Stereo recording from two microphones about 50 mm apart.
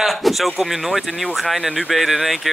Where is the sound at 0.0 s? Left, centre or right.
Centre.